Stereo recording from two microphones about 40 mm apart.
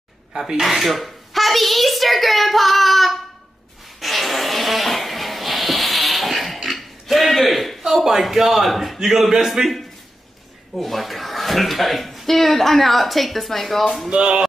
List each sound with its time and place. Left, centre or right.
0.3 s a child's voice: centre
4.0 s a sound: centre
7.8 s a man's voice: centre
10.7 s speech: centre
14.1 s speech: right